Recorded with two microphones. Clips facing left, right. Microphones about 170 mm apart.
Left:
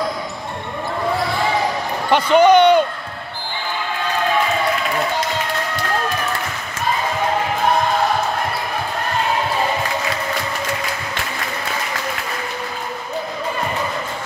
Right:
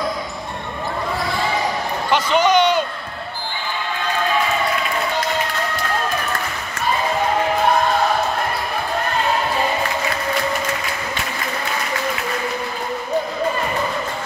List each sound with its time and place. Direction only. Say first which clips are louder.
2.1 s speech: left 5 dB; 55° left (ahead or behind)